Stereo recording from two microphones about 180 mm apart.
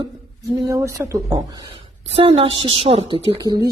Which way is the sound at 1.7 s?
30° right (ahead or behind).